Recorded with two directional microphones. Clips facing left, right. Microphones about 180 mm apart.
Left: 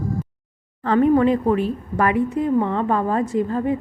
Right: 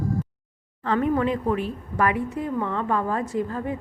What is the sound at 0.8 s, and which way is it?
A woman's voice, 35° left (ahead or behind).